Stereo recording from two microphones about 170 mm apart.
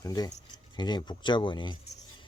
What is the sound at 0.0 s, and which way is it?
Speech, 20° left (ahead or behind).